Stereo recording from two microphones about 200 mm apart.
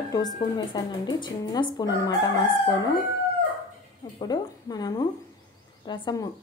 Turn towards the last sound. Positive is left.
turn(degrees=20)  # may be behind; listen again after turning